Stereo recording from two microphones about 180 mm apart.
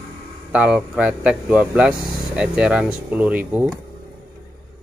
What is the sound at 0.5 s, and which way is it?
Speech, 5° right (ahead or behind).